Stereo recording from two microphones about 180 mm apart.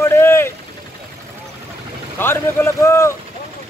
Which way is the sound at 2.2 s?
10° left (ahead or behind).